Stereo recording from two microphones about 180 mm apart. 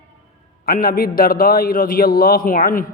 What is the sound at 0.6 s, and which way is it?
A man's voice, 55° left (ahead or behind).